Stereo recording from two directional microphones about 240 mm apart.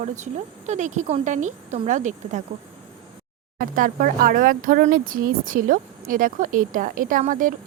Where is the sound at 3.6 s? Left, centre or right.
Right.